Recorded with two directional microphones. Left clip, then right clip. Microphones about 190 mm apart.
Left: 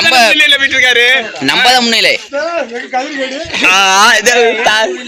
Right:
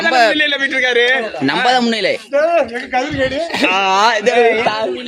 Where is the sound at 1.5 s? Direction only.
10° right (ahead or behind).